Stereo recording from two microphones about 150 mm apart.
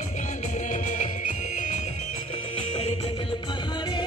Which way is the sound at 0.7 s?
55° left (ahead or behind).